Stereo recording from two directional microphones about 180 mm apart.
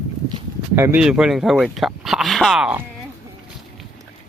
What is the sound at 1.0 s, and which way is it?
Speech, 5° right (ahead or behind).